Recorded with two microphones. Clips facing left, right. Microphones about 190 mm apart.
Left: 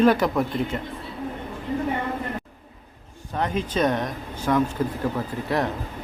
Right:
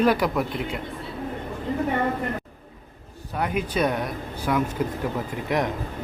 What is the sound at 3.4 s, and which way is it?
Speech, 10° right (ahead or behind).